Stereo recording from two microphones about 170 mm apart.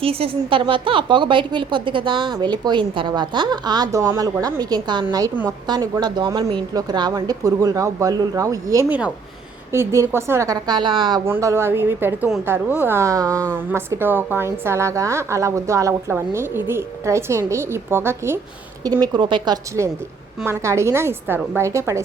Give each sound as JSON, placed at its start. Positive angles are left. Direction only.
{"t": 0.0, "sound": "a woman's voice", "side_deg": -35}
{"t": 5.3, "sound": "a woman's voice", "side_deg": -10}
{"t": 5.6, "sound": "a woman's voice", "side_deg": -25}
{"t": 11.3, "sound": "a woman's voice", "side_deg": -15}